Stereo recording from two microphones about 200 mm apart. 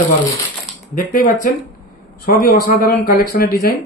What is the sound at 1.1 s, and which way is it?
A man's voice, 45° left (ahead or behind).